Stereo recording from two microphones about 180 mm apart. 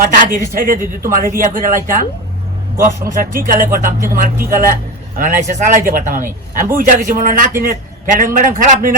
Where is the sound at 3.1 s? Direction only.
50° right (ahead or behind).